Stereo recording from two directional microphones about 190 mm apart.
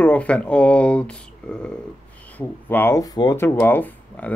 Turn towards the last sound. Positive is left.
turn(degrees=10)  # may be behind; listen again after turning